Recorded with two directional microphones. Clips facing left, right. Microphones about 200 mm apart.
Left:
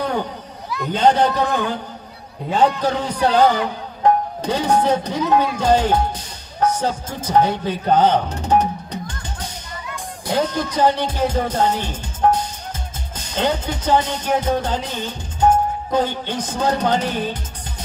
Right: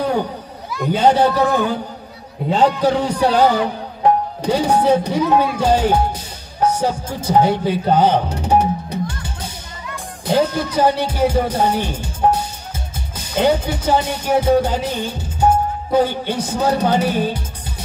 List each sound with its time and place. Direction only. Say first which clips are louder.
0.8 s music: right 2 dB; 10° right (ahead or behind)
2.6 s speech: right 2 dB; 10° right (ahead or behind)
10.3 s music: right 4 dB; 10° right (ahead or behind)
13.1 s speech: right 5 dB; 10° right (ahead or behind)